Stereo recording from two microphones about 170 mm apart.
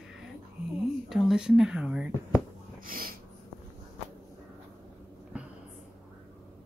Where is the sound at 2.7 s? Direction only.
55° right (ahead or behind).